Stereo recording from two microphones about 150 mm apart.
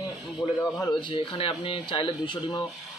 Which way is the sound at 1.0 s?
35° left (ahead or behind).